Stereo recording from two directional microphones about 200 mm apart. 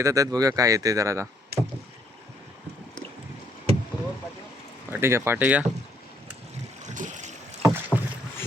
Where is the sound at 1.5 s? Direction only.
50° right (ahead or behind).